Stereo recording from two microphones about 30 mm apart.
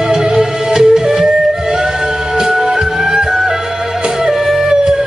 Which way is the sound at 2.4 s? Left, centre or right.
Centre.